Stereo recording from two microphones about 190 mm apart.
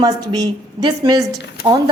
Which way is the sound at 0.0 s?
20° right (ahead or behind).